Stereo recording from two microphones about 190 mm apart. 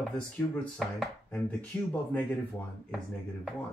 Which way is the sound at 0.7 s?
Centre (ahead or behind).